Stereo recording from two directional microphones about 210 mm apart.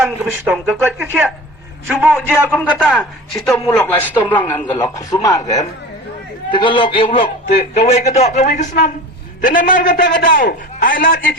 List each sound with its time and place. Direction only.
0.0 s speech: 5° right (ahead or behind)
2.3 s a man's voice: 5° left (ahead or behind); by 7.5 s 25° left (ahead or behind)
7.6 s a man's voice: 45° left (ahead or behind)
7.9 s a man's voice: 30° left (ahead or behind)